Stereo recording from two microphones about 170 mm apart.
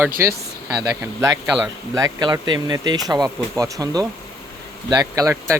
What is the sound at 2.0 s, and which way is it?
Speech, 20° right (ahead or behind).